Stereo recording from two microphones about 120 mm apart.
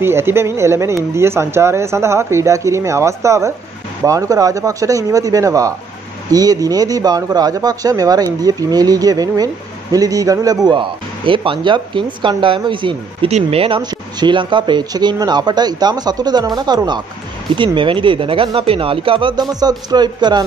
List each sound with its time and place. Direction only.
0.0 s speech: 20° right (ahead or behind)
10.7 s speech: 45° right (ahead or behind)
13.3 s speech: 55° right (ahead or behind); by 20.4 s 35° right (ahead or behind)